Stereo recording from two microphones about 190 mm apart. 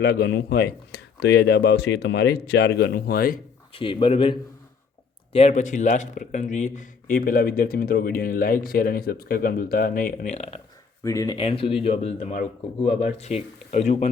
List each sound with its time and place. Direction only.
0.0 s speech: 60° left (ahead or behind)
3.7 s speech: 30° left (ahead or behind)
11.0 s speech: 15° left (ahead or behind)
11.3 s speech: 30° left (ahead or behind)